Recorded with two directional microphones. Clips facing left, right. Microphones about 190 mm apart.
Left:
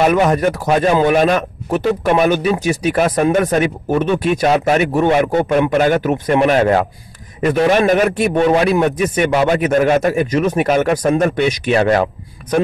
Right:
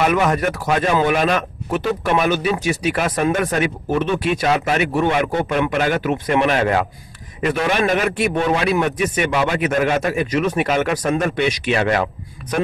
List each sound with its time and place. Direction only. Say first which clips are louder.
0.0 s a man's voice: left 4 dB; 35° left (ahead or behind)